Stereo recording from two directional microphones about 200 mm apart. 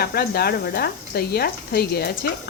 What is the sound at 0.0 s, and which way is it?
Speech, 50° left (ahead or behind).